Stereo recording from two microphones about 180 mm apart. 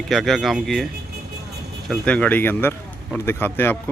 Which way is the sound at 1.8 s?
5° left (ahead or behind).